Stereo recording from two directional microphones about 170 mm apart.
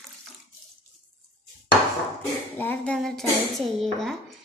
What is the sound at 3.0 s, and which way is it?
Speech, centre (ahead or behind).